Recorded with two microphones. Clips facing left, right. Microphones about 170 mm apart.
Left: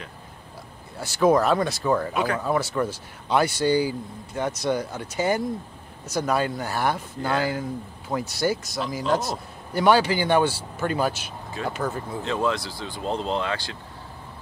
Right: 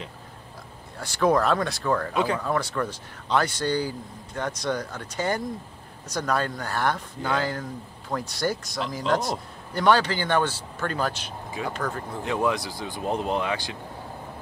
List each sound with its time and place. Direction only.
0.9 s a man's voice: 5° left (ahead or behind)
12.2 s speech: 15° right (ahead or behind)